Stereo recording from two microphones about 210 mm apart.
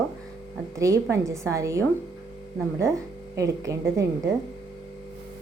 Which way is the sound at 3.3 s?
15° right (ahead or behind).